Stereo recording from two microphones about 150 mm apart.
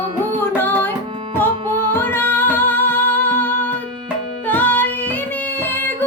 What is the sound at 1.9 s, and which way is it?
Music, 15° left (ahead or behind).